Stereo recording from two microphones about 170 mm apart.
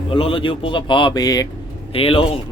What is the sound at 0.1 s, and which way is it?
Speech, 30° left (ahead or behind).